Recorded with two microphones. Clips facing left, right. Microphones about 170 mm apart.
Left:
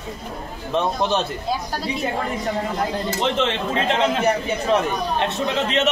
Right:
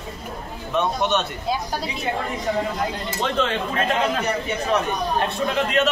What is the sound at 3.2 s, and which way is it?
Speech, 25° left (ahead or behind).